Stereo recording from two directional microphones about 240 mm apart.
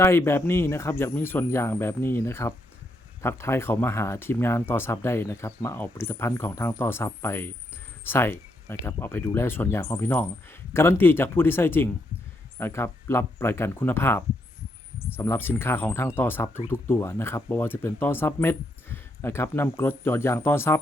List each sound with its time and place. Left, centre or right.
0.0 s speech: centre